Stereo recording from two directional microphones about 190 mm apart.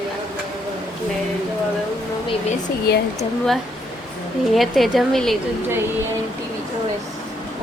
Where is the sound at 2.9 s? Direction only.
55° left (ahead or behind).